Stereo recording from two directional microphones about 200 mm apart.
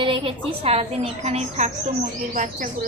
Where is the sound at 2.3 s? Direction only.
40° right (ahead or behind).